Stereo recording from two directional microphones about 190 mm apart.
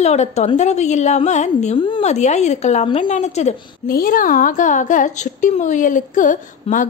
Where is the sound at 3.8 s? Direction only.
50° left (ahead or behind).